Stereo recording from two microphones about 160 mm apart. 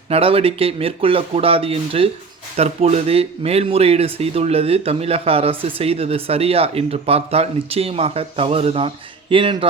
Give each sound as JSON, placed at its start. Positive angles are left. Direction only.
{"t": 0.1, "sound": "speech", "side_deg": -35}